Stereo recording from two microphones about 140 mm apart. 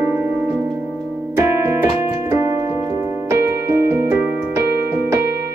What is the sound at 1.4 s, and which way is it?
Keyboard, 20° right (ahead or behind).